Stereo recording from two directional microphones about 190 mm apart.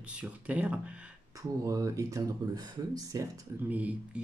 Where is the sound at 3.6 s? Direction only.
5° right (ahead or behind).